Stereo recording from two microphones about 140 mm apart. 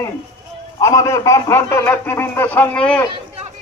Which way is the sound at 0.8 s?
20° left (ahead or behind).